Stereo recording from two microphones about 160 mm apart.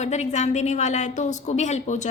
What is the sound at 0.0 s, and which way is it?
Speech, 45° left (ahead or behind).